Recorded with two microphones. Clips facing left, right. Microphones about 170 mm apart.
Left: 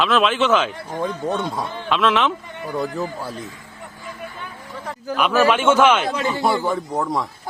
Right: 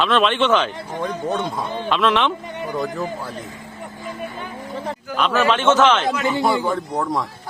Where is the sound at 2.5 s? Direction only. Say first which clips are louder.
Right 1 dB; 20° right (ahead or behind).